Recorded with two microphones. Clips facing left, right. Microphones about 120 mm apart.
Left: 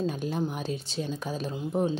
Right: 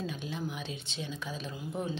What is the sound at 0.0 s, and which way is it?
A woman's voice, 45° left (ahead or behind).